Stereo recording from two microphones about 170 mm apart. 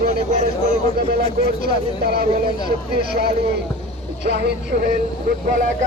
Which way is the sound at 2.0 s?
65° right (ahead or behind).